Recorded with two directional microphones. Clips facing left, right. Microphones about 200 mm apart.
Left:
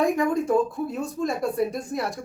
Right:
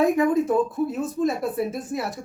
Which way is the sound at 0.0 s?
5° right (ahead or behind).